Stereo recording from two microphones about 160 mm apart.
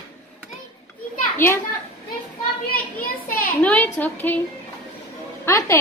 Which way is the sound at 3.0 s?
60° left (ahead or behind).